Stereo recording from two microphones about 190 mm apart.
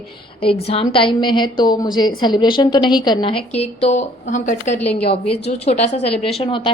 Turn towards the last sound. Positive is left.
turn(degrees=30)  # may be behind; listen again after turning